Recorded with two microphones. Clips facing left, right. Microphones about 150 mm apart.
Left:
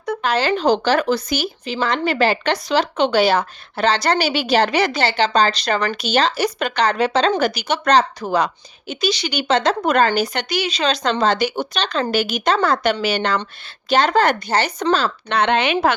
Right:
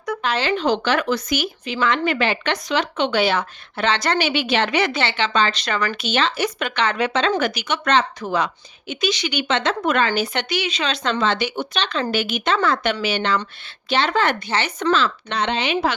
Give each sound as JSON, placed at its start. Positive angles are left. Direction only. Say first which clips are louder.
{"t": 0.2, "sound": "speech", "louder": "left 3 dB", "side_deg": 40}
{"t": 15.3, "sound": "a woman's voice", "louder": "left 9 dB", "side_deg": 60}